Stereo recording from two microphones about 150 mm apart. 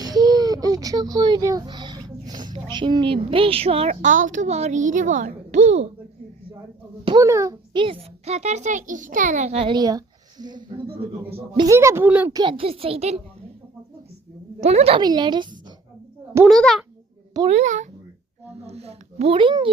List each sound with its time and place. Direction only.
0.0 s baby cry: 25° right (ahead or behind)
2.6 s speech: 30° right (ahead or behind)
4.1 s a child's voice: 55° right (ahead or behind)
7.2 s a child's voice: 20° right (ahead or behind); by 9.6 s 50° right (ahead or behind)
9.6 s a woman's voice: 25° right (ahead or behind)
11.3 s speech: 40° right (ahead or behind)
11.6 s a woman's voice: 20° right (ahead or behind)
12.3 s speech: 30° right (ahead or behind)
14.6 s a child's voice: 45° right (ahead or behind)
15.0 s speech: 30° right (ahead or behind)
16.5 s a child's voice: centre (ahead or behind)
17.5 s a child's voice: 55° right (ahead or behind); by 19.7 s 35° right (ahead or behind)